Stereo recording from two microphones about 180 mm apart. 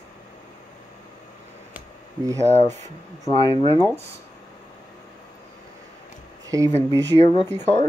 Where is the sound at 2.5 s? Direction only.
40° right (ahead or behind).